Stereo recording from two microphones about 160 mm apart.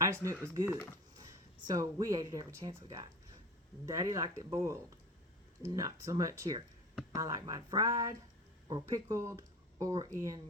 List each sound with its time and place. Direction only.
0.0 s speech: 20° right (ahead or behind)
3.8 s speech: 20° right (ahead or behind)